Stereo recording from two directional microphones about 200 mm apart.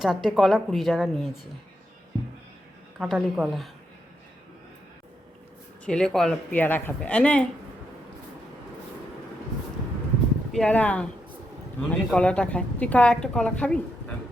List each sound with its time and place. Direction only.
0.0 s a woman's voice: centre (ahead or behind)
3.0 s a woman's voice: 5° right (ahead or behind)
5.8 s a woman's voice: 5° left (ahead or behind)
10.5 s a woman's voice: 5° left (ahead or behind)